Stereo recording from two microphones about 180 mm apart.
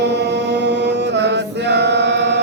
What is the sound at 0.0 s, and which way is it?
Chant, 70° right (ahead or behind).